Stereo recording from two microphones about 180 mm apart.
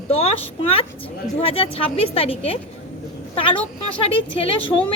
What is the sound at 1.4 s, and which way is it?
A woman's voice, 30° left (ahead or behind).